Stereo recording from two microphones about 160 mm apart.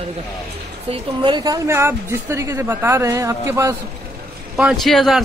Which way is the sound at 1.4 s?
20° right (ahead or behind).